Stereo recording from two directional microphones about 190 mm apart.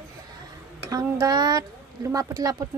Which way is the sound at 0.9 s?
20° right (ahead or behind).